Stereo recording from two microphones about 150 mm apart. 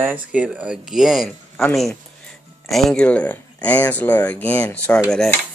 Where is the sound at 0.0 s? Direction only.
10° right (ahead or behind).